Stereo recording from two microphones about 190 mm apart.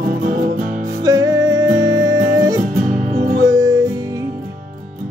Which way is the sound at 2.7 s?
45° right (ahead or behind).